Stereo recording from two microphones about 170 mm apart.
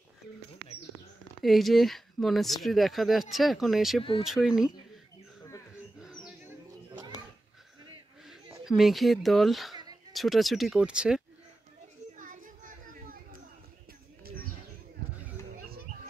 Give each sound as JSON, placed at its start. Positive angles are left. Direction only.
{"t": 1.4, "sound": "speech", "side_deg": 0}
{"t": 5.9, "sound": "bird", "side_deg": -5}
{"t": 8.3, "sound": "speech", "side_deg": 0}
{"t": 12.2, "sound": "children playing", "side_deg": -50}